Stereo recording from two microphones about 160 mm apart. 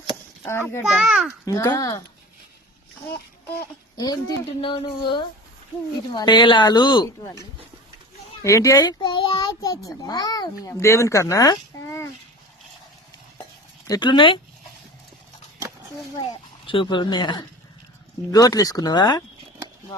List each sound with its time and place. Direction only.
0.4 s a child's voice: 15° left (ahead or behind)
0.9 s a child's voice: 5° right (ahead or behind)
1.5 s a child's voice: 20° left (ahead or behind)
3.9 s a child's voice: 25° left (ahead or behind)
8.4 s a child's voice: 20° left (ahead or behind)
13.8 s a child's voice: 25° left (ahead or behind)
16.6 s a child's voice: 30° left (ahead or behind)